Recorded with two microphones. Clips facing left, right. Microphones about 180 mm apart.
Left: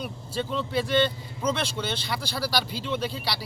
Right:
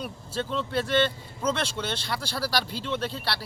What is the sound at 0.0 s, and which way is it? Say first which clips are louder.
Speech: left 1 dB; 5° left (ahead or behind).